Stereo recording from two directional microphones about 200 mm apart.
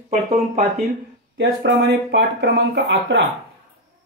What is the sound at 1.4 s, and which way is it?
Speech, 65° right (ahead or behind).